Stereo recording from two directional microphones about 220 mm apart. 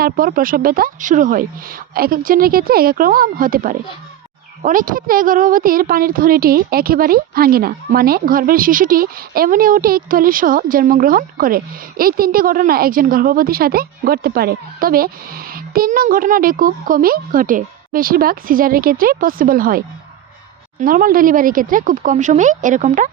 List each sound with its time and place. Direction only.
0.0 s a woman's voice: 40° right (ahead or behind)